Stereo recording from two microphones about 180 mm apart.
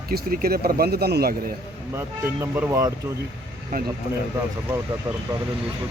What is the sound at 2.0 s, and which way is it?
Speech, 15° right (ahead or behind).